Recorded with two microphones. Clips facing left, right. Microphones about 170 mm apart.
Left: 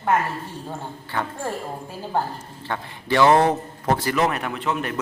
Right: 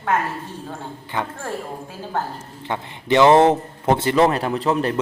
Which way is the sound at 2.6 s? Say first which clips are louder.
Right 3 dB; 20° right (ahead or behind).